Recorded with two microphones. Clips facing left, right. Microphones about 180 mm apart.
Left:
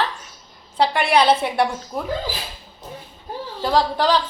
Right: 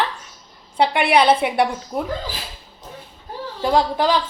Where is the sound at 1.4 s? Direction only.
Centre (ahead or behind).